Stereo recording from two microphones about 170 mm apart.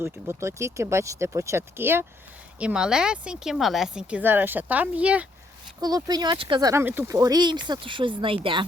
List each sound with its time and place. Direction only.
0.0 s speech: 15° right (ahead or behind)
5.8 s speech: 25° right (ahead or behind)